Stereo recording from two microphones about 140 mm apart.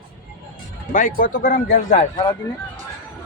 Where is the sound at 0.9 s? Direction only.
70° left (ahead or behind).